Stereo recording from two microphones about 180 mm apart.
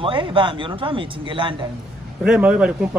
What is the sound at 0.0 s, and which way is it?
Speech, 30° right (ahead or behind).